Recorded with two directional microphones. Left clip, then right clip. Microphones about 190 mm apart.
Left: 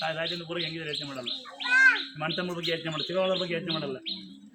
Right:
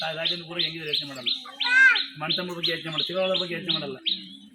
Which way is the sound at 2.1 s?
25° left (ahead or behind).